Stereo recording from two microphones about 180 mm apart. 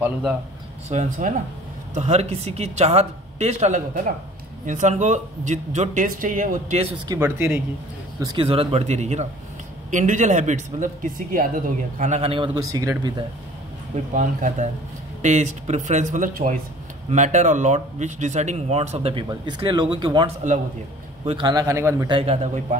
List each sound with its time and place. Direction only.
0.0 s speech: 5° right (ahead or behind)
0.8 s speech: 45° right (ahead or behind)
7.1 s speech: 15° right (ahead or behind)
8.2 s speech: 25° right (ahead or behind)
14.1 s speech: 45° right (ahead or behind); by 20.2 s 25° right (ahead or behind)
21.3 s speech: 25° right (ahead or behind)
22.1 s speech: 35° right (ahead or behind)